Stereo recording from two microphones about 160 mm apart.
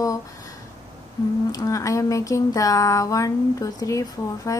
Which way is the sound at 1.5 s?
20° left (ahead or behind).